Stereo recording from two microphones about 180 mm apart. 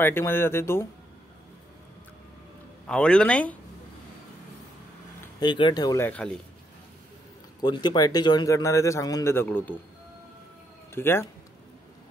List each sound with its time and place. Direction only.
0.0 s speech: 10° left (ahead or behind)
2.9 s speech: 5° left (ahead or behind)
5.4 s speech: 25° left (ahead or behind); by 6.4 s 5° left (ahead or behind)
7.6 s speech: 25° left (ahead or behind)
11.0 s speech: 15° left (ahead or behind)